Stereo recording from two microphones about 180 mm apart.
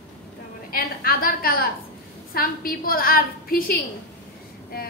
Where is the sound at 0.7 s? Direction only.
55° left (ahead or behind).